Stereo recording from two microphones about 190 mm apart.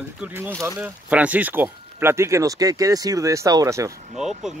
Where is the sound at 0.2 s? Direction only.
10° right (ahead or behind).